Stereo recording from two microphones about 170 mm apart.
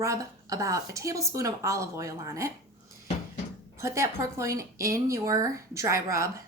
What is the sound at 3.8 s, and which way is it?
Speech, 15° right (ahead or behind).